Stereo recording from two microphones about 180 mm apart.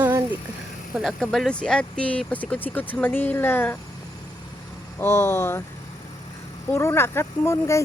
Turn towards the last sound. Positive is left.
turn(degrees=15)  # may be behind; listen again after turning